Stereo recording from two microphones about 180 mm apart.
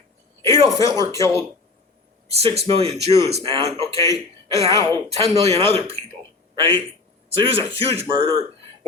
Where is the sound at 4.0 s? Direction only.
15° left (ahead or behind).